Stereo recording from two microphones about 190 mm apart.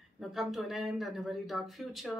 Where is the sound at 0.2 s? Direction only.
Centre (ahead or behind).